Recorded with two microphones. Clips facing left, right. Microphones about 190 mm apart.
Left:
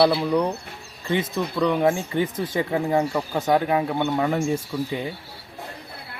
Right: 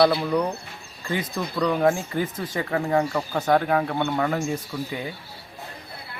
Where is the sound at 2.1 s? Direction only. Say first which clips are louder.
Left 3 dB; 25° left (ahead or behind).